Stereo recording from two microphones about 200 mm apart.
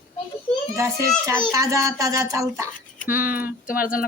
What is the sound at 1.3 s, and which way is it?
A child's voice, 15° right (ahead or behind).